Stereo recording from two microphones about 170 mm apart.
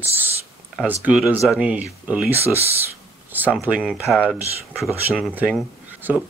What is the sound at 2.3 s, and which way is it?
Speech, 35° right (ahead or behind).